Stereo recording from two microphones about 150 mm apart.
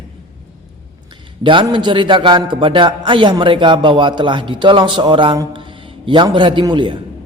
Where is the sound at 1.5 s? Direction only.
35° right (ahead or behind).